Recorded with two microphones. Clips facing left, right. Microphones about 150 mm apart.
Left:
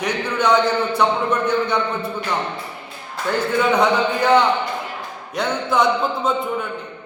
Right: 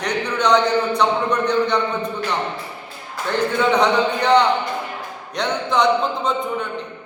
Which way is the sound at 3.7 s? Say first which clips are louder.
Even; 5° left (ahead or behind).